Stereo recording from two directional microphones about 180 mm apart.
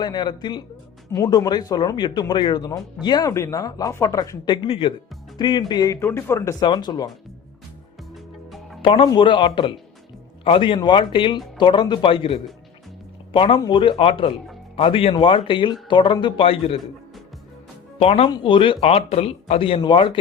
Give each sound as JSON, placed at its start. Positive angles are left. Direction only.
{"t": 0.0, "sound": "speech", "side_deg": 25}
{"t": 8.8, "sound": "speech", "side_deg": 30}
{"t": 18.0, "sound": "speech", "side_deg": 35}